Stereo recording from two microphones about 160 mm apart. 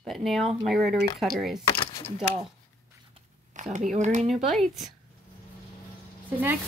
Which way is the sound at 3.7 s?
50° right (ahead or behind).